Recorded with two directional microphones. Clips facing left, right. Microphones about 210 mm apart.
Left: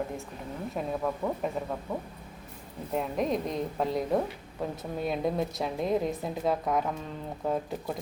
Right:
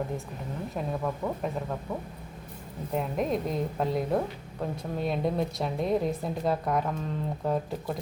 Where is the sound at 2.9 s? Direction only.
Centre (ahead or behind).